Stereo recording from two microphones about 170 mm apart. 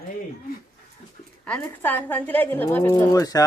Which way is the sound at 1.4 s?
10° left (ahead or behind).